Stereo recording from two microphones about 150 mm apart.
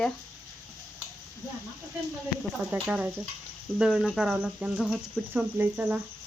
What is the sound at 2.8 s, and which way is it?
Speech, 5° right (ahead or behind).